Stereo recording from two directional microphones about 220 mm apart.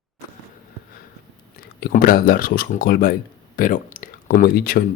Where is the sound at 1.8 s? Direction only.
40° left (ahead or behind).